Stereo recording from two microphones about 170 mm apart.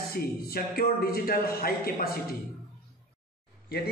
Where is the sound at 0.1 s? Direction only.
60° left (ahead or behind).